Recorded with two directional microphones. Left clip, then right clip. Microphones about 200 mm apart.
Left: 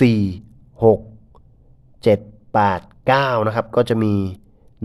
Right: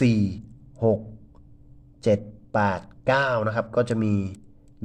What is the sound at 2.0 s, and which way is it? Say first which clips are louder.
Speech: left 6 dB; 20° left (ahead or behind).